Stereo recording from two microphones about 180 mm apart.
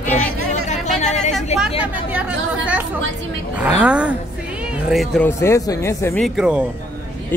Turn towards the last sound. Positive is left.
turn(degrees=-5)  # may be behind; listen again after turning